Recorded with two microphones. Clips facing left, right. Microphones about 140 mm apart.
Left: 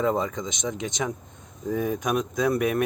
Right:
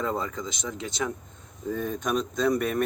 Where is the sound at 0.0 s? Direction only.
20° left (ahead or behind).